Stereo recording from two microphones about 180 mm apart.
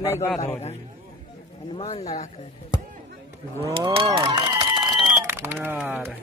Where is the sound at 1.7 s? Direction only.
35° left (ahead or behind).